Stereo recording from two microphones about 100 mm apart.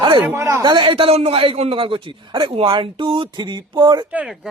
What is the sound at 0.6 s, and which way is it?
A man's voice, 50° right (ahead or behind).